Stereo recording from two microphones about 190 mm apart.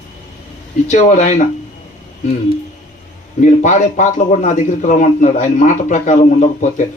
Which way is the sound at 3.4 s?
40° left (ahead or behind).